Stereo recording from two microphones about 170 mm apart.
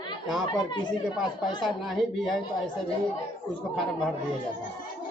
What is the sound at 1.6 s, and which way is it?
Speech, centre (ahead or behind).